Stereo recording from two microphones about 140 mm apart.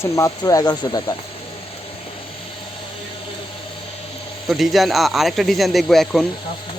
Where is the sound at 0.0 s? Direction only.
25° left (ahead or behind).